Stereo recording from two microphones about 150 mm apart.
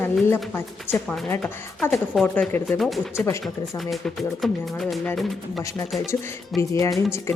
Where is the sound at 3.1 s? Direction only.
20° left (ahead or behind).